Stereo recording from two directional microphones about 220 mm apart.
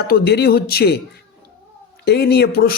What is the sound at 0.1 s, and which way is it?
Speech, 45° left (ahead or behind).